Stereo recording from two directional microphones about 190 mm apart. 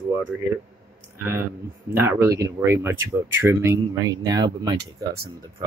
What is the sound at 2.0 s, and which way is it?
Speech, 15° right (ahead or behind).